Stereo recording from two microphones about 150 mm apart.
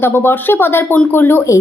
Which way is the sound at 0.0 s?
15° left (ahead or behind).